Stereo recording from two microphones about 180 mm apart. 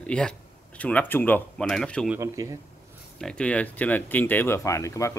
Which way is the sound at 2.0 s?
15° right (ahead or behind).